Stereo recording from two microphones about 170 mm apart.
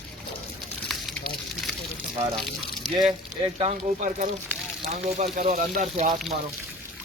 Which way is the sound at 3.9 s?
50° right (ahead or behind).